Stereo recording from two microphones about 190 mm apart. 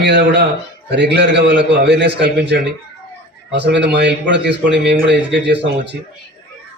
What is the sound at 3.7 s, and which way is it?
A man's voice, 65° right (ahead or behind).